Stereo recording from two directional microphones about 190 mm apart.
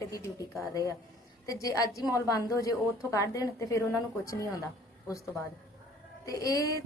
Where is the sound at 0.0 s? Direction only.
15° left (ahead or behind).